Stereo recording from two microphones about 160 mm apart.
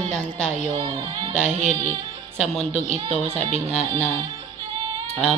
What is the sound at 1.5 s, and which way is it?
Speech, 45° right (ahead or behind).